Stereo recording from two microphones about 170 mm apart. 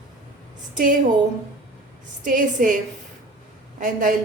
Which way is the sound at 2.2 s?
50° right (ahead or behind).